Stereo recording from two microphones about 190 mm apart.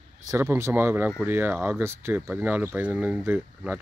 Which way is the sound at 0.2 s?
15° right (ahead or behind).